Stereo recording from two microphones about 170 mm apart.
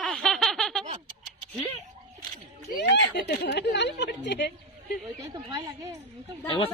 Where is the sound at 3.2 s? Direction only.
85° left.